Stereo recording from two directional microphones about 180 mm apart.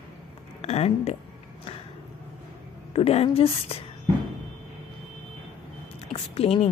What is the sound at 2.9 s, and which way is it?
Speech, 35° left (ahead or behind).